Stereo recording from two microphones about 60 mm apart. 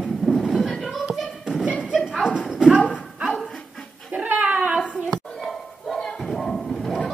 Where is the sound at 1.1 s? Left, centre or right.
Centre.